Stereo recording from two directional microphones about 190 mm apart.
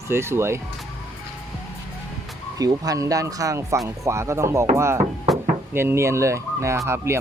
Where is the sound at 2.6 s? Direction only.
20° right (ahead or behind).